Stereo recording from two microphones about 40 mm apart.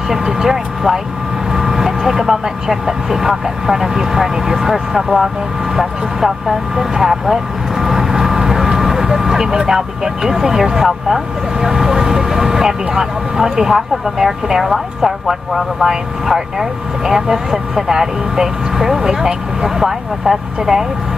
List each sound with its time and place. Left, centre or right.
0.1 s speech: centre
6.8 s vehicle: centre
9.5 s speech: centre